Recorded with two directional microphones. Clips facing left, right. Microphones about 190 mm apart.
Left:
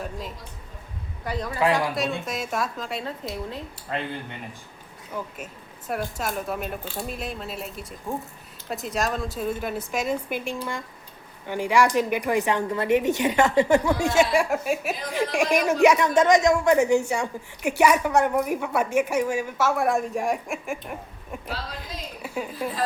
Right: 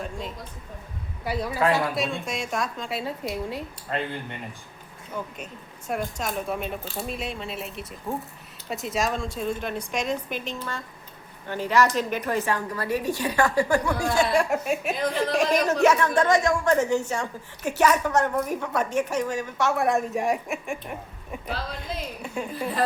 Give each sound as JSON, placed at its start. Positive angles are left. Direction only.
{"t": 1.2, "sound": "a man's voice", "side_deg": -10}
{"t": 5.9, "sound": "a woman's voice", "side_deg": 5}
{"t": 14.3, "sound": "a woman's voice", "side_deg": 0}